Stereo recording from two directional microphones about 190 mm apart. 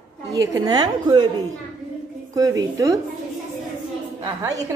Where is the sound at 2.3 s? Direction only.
20° right (ahead or behind).